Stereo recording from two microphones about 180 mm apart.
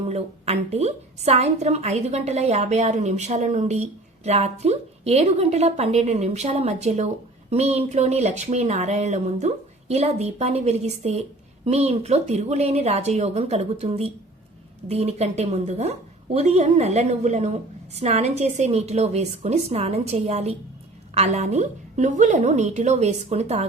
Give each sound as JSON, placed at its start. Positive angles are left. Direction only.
{"t": 0.1, "sound": "a woman's voice", "side_deg": -35}